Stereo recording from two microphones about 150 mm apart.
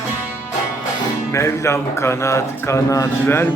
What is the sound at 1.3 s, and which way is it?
A man's voice, 20° left (ahead or behind).